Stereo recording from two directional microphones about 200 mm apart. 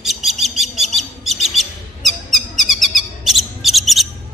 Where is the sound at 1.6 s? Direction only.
Centre (ahead or behind).